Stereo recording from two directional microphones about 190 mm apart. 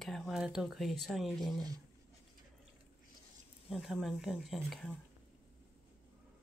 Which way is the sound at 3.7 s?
Centre (ahead or behind).